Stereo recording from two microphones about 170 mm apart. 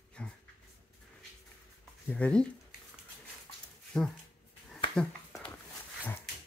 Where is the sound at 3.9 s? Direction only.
5° left (ahead or behind).